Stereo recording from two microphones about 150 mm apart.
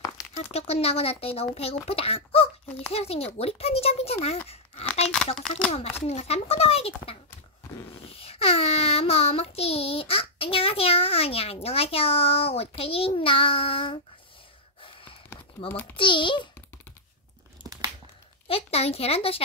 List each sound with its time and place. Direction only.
0.5 s child singing: 45° left (ahead or behind)
5.7 s speech: 45° left (ahead or behind)
6.0 s child singing: 45° left (ahead or behind)
14.8 s gasp: 35° left (ahead or behind)
15.7 s a child's voice: 10° left (ahead or behind)
16.0 s child singing: 35° left (ahead or behind)
18.5 s child singing: 40° left (ahead or behind)